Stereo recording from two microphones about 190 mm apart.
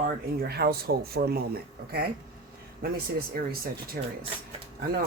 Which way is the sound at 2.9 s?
50° right (ahead or behind).